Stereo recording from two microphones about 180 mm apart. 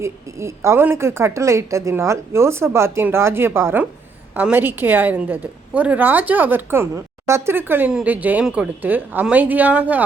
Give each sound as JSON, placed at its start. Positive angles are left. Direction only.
{"t": 0.0, "sound": "a woman's voice", "side_deg": -15}